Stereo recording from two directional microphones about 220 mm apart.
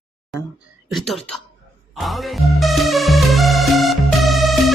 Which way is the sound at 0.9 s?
Centre (ahead or behind).